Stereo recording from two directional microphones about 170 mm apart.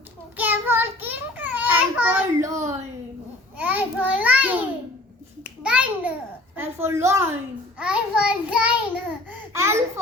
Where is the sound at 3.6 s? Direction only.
10° right (ahead or behind).